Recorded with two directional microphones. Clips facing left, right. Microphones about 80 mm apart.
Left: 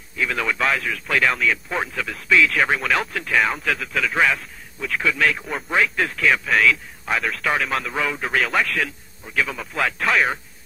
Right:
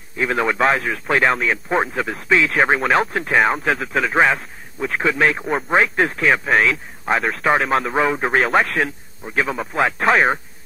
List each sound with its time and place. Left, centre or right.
0.2 s speech: right